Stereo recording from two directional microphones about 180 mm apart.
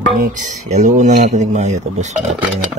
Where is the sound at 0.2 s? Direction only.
40° right (ahead or behind).